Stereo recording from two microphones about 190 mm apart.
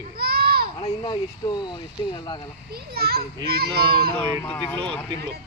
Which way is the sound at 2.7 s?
55° right (ahead or behind).